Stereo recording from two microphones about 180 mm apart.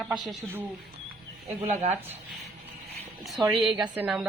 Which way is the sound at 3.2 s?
Centre (ahead or behind).